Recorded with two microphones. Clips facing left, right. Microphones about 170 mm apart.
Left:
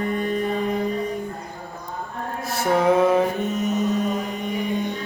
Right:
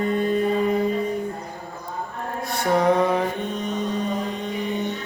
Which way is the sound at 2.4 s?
Centre (ahead or behind).